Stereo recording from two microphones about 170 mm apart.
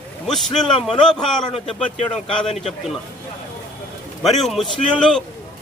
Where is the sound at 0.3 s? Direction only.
Centre (ahead or behind).